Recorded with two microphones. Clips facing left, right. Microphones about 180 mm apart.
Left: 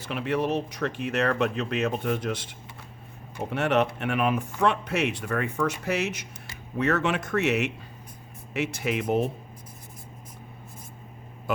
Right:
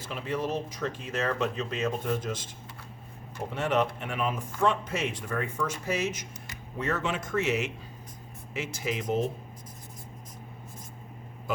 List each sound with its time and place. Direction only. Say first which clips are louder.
0.0 s speech: left 5 dB; 65° left (ahead or behind)